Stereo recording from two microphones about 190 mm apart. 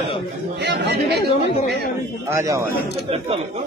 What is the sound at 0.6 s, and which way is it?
Speech, 65° right (ahead or behind).